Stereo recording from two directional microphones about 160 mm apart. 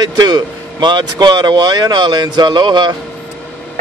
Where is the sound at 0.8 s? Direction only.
30° right (ahead or behind).